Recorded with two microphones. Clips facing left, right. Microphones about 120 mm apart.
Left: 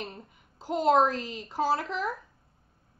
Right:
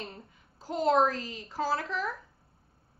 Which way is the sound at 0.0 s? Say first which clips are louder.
Left 3 dB; 20° left (ahead or behind).